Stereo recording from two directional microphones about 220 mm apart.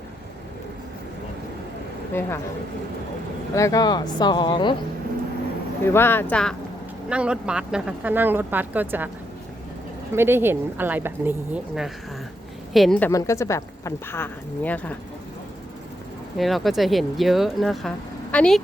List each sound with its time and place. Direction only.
3.5 s speech: 15° left (ahead or behind)
5.8 s a woman's voice: 10° left (ahead or behind); by 9.0 s 10° right (ahead or behind)
10.2 s a woman's voice: 10° right (ahead or behind); by 14.9 s 5° left (ahead or behind)
16.4 s speech: centre (ahead or behind)